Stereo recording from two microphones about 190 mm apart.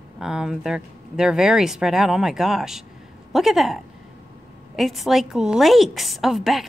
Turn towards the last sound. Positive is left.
turn(degrees=0)  # may be behind; listen again after turning